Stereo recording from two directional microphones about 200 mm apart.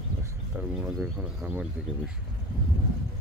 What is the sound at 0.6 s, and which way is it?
Speech, 5° right (ahead or behind).